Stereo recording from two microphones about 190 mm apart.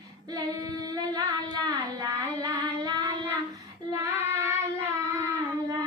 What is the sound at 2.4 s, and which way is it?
Female singing, 25° right (ahead or behind).